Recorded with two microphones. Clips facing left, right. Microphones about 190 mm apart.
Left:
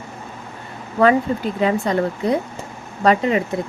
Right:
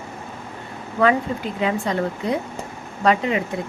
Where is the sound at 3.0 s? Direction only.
40° left (ahead or behind).